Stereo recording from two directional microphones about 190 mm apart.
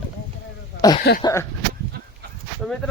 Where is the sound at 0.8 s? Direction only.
20° left (ahead or behind).